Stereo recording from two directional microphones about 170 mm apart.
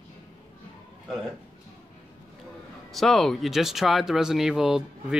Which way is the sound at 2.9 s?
Centre (ahead or behind).